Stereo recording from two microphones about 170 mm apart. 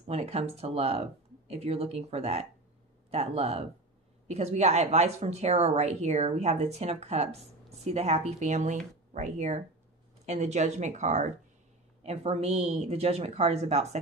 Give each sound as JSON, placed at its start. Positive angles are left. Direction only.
{"t": 0.0, "sound": "speech", "side_deg": -35}